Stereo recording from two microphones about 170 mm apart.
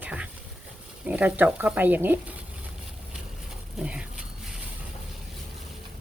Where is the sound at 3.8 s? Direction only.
5° right (ahead or behind).